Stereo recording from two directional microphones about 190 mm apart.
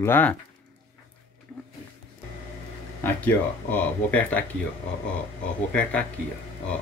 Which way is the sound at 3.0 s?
10° left (ahead or behind).